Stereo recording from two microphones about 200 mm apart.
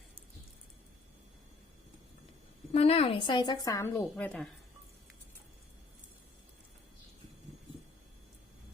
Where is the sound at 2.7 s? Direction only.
30° left (ahead or behind); by 4.4 s 5° left (ahead or behind).